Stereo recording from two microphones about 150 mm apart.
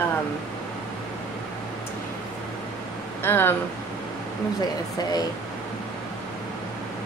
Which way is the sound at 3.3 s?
15° left (ahead or behind).